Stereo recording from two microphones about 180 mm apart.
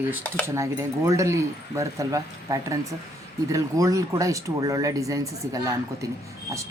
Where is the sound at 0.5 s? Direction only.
15° right (ahead or behind).